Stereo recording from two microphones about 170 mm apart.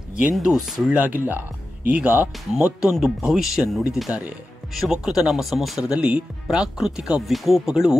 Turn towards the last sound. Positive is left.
turn(degrees=-5)  # may be behind; listen again after turning